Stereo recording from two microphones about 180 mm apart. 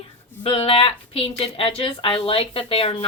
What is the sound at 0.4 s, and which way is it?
A woman's voice, 30° left (ahead or behind).